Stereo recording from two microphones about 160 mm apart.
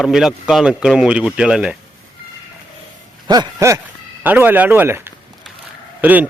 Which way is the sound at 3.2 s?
25° right (ahead or behind).